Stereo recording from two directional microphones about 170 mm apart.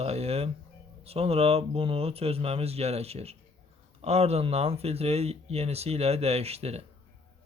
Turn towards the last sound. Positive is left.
turn(degrees=-35)  # may be behind; listen again after turning